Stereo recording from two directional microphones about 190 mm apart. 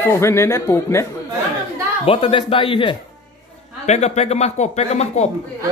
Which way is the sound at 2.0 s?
25° left (ahead or behind).